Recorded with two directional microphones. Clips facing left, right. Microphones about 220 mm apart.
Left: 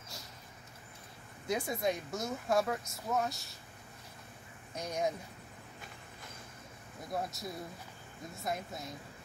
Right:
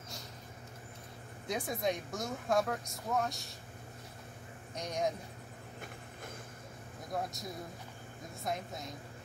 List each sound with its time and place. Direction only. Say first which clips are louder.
1.5 s speech: left 1 dB; 5° left (ahead or behind)
4.7 s speech: even; 5° left (ahead or behind)
7.1 s speech: even; 5° left (ahead or behind)
8.5 s speech: even; 5° left (ahead or behind)